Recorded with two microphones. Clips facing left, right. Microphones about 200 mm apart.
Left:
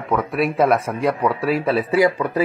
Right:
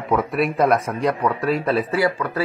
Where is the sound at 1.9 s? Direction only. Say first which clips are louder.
Left 4 dB; 15° left (ahead or behind).